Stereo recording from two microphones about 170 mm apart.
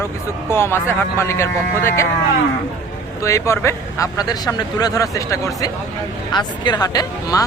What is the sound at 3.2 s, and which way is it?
Speech, 15° left (ahead or behind).